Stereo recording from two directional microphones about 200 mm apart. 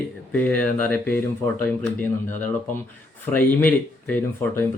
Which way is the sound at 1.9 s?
40° left (ahead or behind).